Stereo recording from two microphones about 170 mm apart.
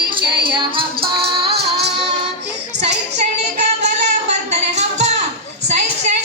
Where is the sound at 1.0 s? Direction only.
65° right (ahead or behind).